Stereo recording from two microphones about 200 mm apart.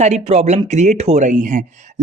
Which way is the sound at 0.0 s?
35° right (ahead or behind).